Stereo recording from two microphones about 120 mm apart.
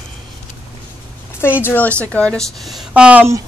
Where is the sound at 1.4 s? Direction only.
20° left (ahead or behind); by 2.8 s centre (ahead or behind).